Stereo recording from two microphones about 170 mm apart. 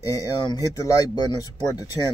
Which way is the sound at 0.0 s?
25° left (ahead or behind).